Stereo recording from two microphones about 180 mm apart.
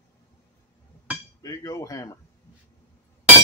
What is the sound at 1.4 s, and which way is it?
Speech, 20° left (ahead or behind).